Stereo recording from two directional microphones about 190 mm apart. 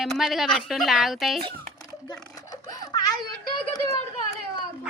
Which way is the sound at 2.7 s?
20° left (ahead or behind).